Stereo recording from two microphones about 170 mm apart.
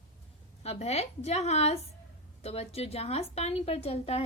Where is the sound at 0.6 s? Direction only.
40° left (ahead or behind).